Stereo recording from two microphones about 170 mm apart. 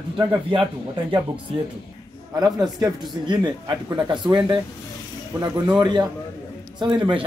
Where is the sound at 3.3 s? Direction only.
25° right (ahead or behind).